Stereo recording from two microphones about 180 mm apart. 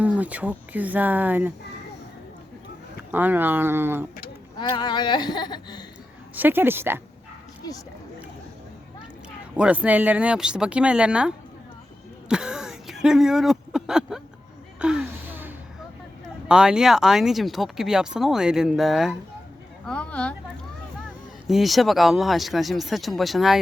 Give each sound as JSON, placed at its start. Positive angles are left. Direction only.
{"t": 0.0, "sound": "speech", "side_deg": -10}
{"t": 3.1, "sound": "speech", "side_deg": -10}
{"t": 4.5, "sound": "speech", "side_deg": 25}
{"t": 6.3, "sound": "speech", "side_deg": -10}
{"t": 9.6, "sound": "speech", "side_deg": -5}
{"t": 12.3, "sound": "a sound", "side_deg": -5}
{"t": 14.8, "sound": "gasp", "side_deg": -5}
{"t": 16.5, "sound": "speech", "side_deg": -5}
{"t": 21.4, "sound": "speech", "side_deg": 0}